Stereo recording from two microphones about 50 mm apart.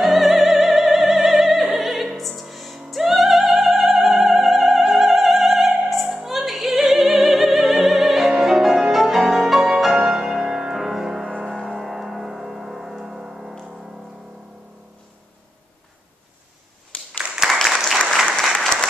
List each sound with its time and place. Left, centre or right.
0.0 s opera: centre
2.5 s music: centre
6.1 s opera: centre
11.2 s music: centre
11.8 s music: centre
16.9 s applause: left
17.5 s applause: centre